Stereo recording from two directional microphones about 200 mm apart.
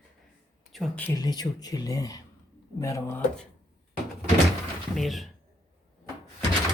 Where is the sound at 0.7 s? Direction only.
Centre (ahead or behind).